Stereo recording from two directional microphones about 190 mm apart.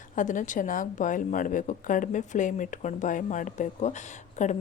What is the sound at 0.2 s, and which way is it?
A woman's voice, 40° left (ahead or behind).